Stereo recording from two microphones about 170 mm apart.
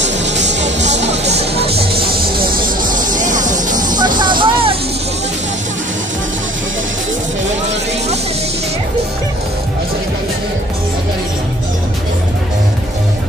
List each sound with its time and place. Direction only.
0.8 s music: 40° right (ahead or behind)
2.0 s a sound: 60° right (ahead or behind)
3.8 s music: 25° right (ahead or behind)